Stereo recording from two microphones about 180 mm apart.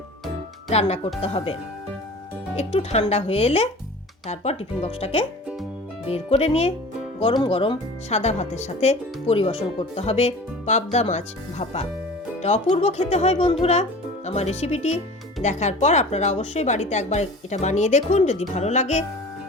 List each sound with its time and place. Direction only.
0.7 s speech: 35° left (ahead or behind)
2.6 s speech: 35° left (ahead or behind)